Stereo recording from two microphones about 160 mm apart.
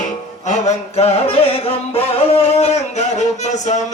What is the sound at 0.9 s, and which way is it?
Music, 40° left (ahead or behind).